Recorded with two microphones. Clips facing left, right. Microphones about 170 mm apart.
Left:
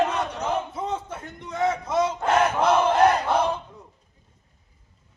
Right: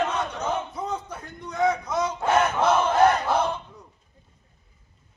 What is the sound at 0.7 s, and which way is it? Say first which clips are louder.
Speech: left 1 dB; 25° left (ahead or behind).